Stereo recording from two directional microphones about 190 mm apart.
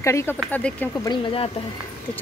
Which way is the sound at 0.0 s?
15° left (ahead or behind).